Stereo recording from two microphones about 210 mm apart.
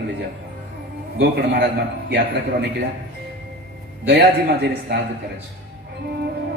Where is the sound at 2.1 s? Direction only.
55° right (ahead or behind).